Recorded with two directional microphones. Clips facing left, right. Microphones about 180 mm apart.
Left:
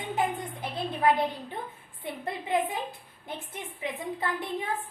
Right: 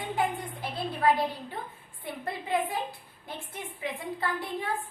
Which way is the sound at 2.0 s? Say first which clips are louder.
Left 1 dB; 20° left (ahead or behind).